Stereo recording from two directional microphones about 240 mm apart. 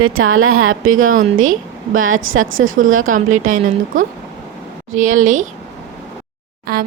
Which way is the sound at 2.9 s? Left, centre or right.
Right.